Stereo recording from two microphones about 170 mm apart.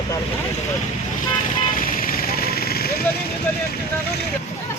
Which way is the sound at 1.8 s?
55° left (ahead or behind).